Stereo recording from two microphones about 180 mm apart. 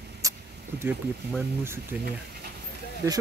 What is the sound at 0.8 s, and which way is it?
Speech, 10° right (ahead or behind).